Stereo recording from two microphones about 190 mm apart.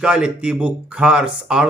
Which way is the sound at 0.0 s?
5° right (ahead or behind).